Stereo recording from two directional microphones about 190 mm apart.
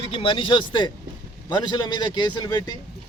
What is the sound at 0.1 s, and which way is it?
Speech, 30° left (ahead or behind).